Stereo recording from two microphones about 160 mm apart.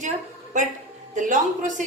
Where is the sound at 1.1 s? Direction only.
50° right (ahead or behind).